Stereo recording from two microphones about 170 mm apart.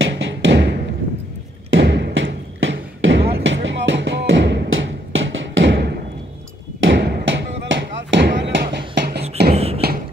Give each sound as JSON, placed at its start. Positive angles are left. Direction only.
{"t": 0.0, "sound": "music", "side_deg": -90}
{"t": 1.8, "sound": "music", "side_deg": -85}
{"t": 6.9, "sound": "a sound", "side_deg": -75}
{"t": 9.5, "sound": "beatboxing", "side_deg": -35}